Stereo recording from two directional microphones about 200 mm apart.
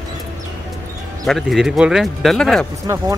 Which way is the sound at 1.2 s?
Centre (ahead or behind).